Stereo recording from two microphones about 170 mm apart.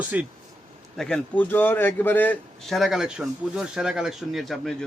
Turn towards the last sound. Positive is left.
turn(degrees=0)  # may be behind; listen again after turning